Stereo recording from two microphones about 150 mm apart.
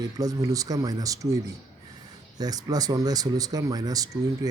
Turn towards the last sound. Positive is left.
turn(degrees=-25)  # may be behind; listen again after turning